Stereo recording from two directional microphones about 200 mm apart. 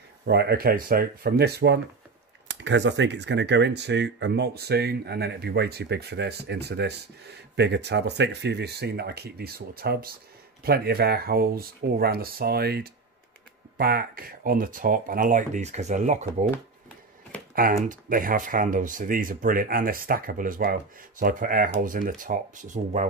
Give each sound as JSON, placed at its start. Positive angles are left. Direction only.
{"t": 0.2, "sound": "speech", "side_deg": -55}
{"t": 17.8, "sound": "speech", "side_deg": -45}